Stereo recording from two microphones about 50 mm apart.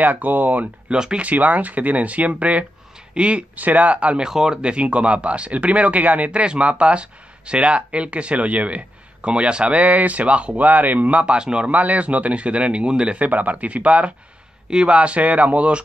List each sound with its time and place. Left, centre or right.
0.0 s speech: right
0.8 s speech: centre
1.2 s speech: right
4.2 s speech: centre
4.6 s speech: right
11.7 s speech: right
13.3 s speech: right